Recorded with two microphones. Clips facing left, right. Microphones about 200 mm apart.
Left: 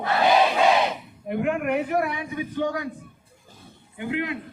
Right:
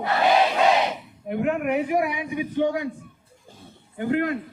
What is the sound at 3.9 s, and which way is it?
Speech, 45° right (ahead or behind).